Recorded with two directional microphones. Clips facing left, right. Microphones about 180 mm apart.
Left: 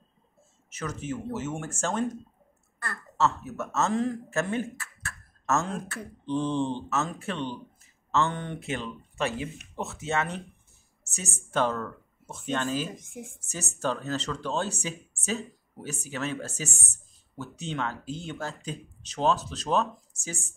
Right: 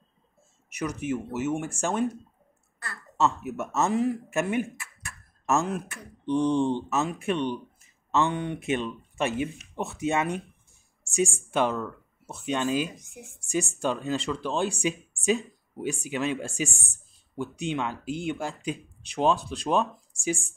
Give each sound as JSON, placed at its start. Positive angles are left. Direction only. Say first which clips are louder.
{"t": 0.7, "sound": "speech", "louder": "right 4 dB", "side_deg": -15}
{"t": 3.2, "sound": "speech", "louder": "right 1 dB", "side_deg": -15}